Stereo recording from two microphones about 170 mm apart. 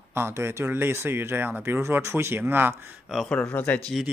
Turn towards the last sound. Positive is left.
turn(degrees=10)  # may be behind; listen again after turning